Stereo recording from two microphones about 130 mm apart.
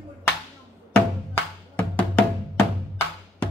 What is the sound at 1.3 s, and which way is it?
Music, 15° left (ahead or behind).